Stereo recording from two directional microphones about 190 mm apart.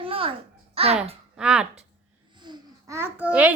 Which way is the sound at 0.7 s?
30° right (ahead or behind).